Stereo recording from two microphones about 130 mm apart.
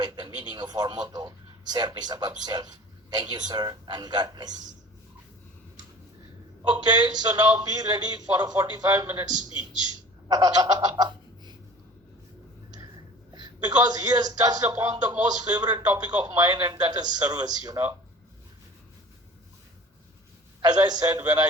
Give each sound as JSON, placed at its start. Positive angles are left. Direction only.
{"t": 0.0, "sound": "radio", "side_deg": -30}
{"t": 1.7, "sound": "a man's voice", "side_deg": -30}
{"t": 6.7, "sound": "a man's voice", "side_deg": -30}
{"t": 10.2, "sound": "a sound", "side_deg": -30}
{"t": 13.3, "sound": "a man's voice", "side_deg": -30}
{"t": 20.6, "sound": "a man's voice", "side_deg": -30}